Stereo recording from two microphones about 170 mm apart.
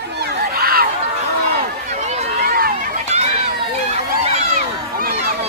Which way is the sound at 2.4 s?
60° right (ahead or behind).